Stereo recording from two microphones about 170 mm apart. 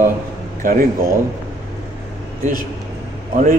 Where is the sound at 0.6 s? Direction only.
55° right (ahead or behind).